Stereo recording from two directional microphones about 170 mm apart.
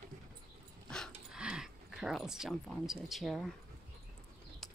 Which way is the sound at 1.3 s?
5° right (ahead or behind).